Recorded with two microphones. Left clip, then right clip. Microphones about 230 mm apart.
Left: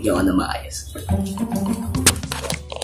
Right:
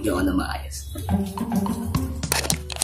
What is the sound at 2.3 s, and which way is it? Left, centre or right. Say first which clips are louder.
Music: right 2 dB; right.